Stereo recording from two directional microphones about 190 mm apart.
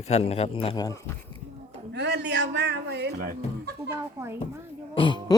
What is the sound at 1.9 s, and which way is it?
A man's voice, 60° right (ahead or behind).